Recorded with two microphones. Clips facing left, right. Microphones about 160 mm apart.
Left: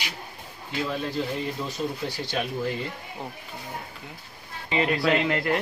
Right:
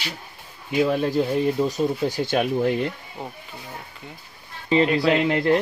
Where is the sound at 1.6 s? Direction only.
40° right (ahead or behind).